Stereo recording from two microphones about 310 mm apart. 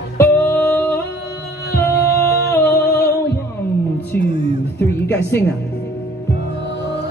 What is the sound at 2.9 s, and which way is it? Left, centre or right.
Music, left.